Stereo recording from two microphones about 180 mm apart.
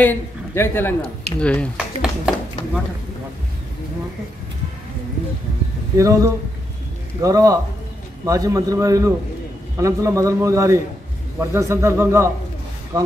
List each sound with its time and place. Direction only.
0.0 s a man's voice: 10° left (ahead or behind)
1.8 s speech: 5° right (ahead or behind)
5.9 s a man's voice: 15° right (ahead or behind)